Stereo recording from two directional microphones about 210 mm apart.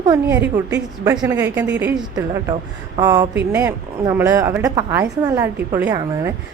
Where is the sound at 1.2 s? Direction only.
10° right (ahead or behind).